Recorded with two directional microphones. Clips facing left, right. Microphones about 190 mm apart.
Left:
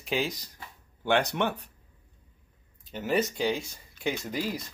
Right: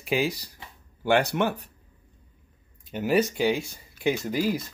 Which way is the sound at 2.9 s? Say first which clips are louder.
Right 4 dB; 10° right (ahead or behind).